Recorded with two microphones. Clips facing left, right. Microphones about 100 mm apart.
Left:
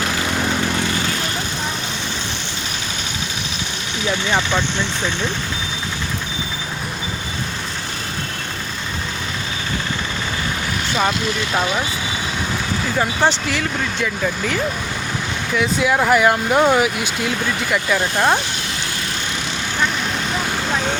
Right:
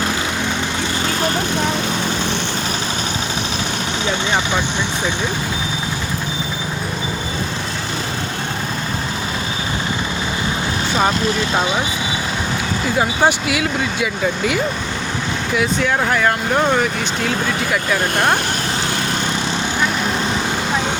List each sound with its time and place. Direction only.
4.3 s speech: 15° right (ahead or behind)
11.5 s speech: 20° right (ahead or behind)
13.0 s speech: 10° right (ahead or behind)